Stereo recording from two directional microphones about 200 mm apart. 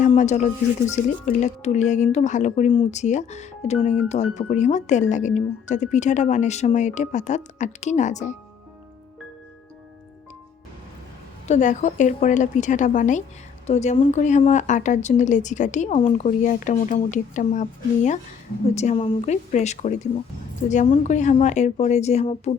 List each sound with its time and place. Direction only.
0.0 s speech: 35° left (ahead or behind)
11.4 s speech: 35° left (ahead or behind)